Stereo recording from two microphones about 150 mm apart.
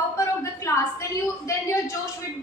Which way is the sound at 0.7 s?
20° left (ahead or behind).